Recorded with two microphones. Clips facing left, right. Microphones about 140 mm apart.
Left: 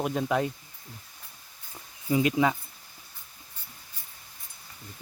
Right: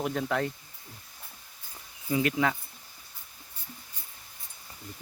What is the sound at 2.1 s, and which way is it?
Speech, 20° left (ahead or behind).